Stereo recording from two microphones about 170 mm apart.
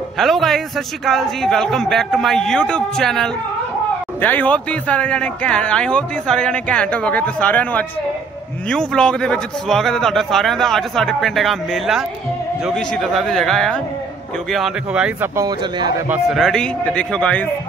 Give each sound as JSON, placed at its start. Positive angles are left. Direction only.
{"t": 0.2, "sound": "a man's voice", "side_deg": 0}
{"t": 15.3, "sound": "a man's voice", "side_deg": -20}
{"t": 16.1, "sound": "a man's voice", "side_deg": 0}